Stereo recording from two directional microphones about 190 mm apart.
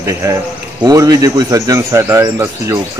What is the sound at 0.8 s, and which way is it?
Speech, 20° right (ahead or behind).